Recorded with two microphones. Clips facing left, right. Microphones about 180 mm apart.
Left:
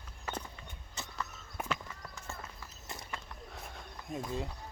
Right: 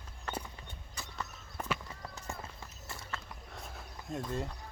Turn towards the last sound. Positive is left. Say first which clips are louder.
# right 1 dB
turn(degrees=0)  # may be behind; listen again after turning